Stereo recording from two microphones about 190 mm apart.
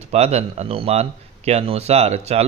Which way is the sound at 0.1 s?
35° right (ahead or behind).